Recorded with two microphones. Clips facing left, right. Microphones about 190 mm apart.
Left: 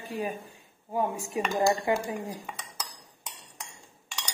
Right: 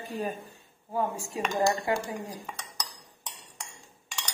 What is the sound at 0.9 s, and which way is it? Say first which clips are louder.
Speech: left 2 dB; 20° left (ahead or behind).